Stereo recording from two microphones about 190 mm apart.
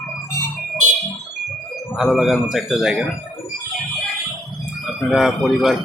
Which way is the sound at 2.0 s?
Centre (ahead or behind).